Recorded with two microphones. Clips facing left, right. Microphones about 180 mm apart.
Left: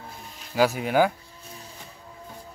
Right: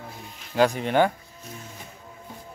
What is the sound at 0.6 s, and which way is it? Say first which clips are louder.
Speech: right 1 dB; 5° left (ahead or behind).